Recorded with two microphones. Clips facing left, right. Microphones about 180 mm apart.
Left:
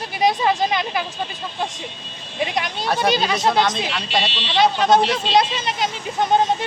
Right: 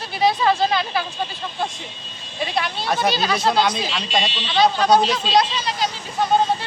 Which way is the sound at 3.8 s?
65° left (ahead or behind).